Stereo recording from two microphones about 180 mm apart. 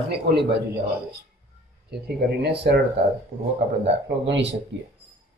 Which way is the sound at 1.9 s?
65° right (ahead or behind).